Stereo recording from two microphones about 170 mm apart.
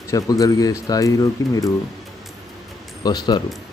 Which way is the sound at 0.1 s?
20° left (ahead or behind).